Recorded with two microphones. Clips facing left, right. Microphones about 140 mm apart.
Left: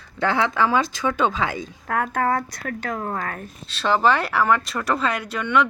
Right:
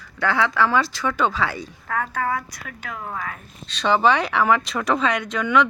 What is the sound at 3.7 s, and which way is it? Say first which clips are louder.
Speech: right 1 dB; 5° left (ahead or behind).